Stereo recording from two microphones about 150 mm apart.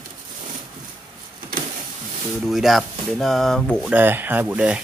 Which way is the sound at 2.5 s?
Centre (ahead or behind).